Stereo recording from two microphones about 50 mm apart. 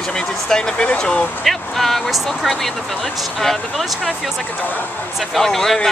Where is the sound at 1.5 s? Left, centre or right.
Centre.